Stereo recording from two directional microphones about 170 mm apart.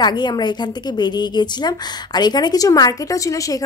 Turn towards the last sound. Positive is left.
turn(degrees=20)  # may be behind; listen again after turning